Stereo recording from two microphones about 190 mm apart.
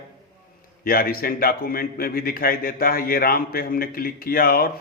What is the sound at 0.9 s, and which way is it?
A man's voice, 50° left (ahead or behind).